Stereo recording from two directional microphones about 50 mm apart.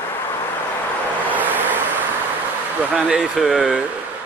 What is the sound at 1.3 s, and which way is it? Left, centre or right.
Vehicle, right.